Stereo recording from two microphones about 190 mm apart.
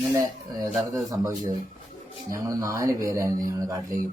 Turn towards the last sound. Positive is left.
turn(degrees=-20)  # may be behind; listen again after turning